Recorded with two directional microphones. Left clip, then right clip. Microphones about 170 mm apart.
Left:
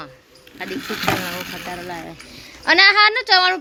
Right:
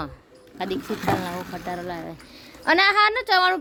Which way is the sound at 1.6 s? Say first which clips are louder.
Left 1 dB; 15° right (ahead or behind).